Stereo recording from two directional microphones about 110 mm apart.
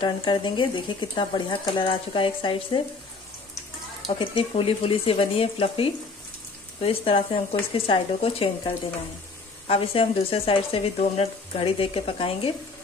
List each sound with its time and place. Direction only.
0.0 s speech: 50° left (ahead or behind)
4.2 s speech: 55° left (ahead or behind)